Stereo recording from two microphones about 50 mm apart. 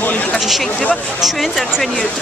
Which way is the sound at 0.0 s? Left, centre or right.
Left.